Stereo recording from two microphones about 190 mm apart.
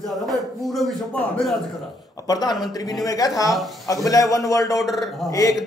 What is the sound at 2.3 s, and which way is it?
A man's voice, 20° left (ahead or behind).